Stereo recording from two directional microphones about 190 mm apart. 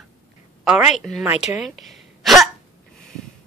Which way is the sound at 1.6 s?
Centre (ahead or behind).